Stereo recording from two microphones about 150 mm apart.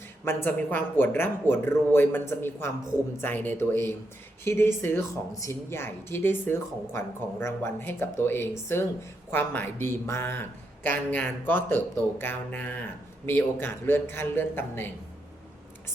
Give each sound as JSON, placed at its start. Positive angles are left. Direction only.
{"t": 0.3, "sound": "a woman's voice", "side_deg": 15}